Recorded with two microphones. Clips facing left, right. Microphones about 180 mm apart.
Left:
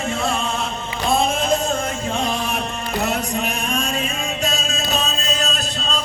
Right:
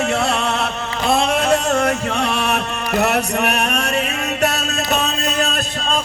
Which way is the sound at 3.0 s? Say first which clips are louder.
Right 5 dB; 70° right (ahead or behind).